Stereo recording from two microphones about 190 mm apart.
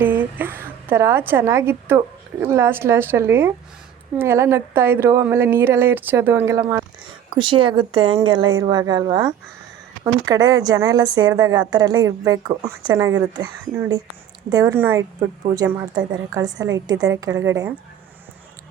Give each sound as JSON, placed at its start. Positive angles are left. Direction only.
{"t": 0.0, "sound": "a woman's voice", "side_deg": -10}
{"t": 7.3, "sound": "speech", "side_deg": -25}